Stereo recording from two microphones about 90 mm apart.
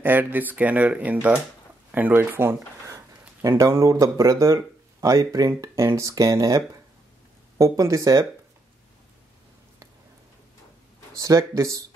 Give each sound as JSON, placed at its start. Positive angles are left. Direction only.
{"t": 0.0, "sound": "speech", "side_deg": -20}
{"t": 3.4, "sound": "speech", "side_deg": -35}
{"t": 11.1, "sound": "speech", "side_deg": -35}